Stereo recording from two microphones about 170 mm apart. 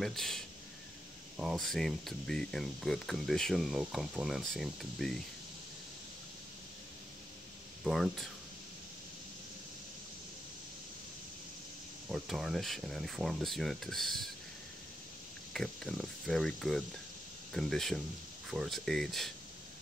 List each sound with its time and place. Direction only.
0.0 s speech: centre (ahead or behind)
7.8 s speech: centre (ahead or behind)
12.1 s speech: centre (ahead or behind)
15.5 s speech: centre (ahead or behind)